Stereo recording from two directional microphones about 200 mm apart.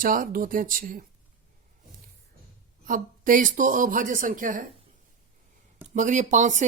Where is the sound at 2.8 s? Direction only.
40° right (ahead or behind).